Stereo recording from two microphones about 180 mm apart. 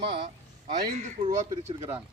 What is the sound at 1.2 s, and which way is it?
Speech, 40° right (ahead or behind).